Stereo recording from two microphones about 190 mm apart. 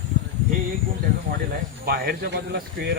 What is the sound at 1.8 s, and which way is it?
A man's voice, 55° right (ahead or behind).